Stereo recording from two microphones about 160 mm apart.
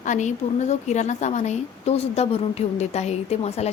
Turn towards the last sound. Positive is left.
turn(degrees=40)  # may be behind; listen again after turning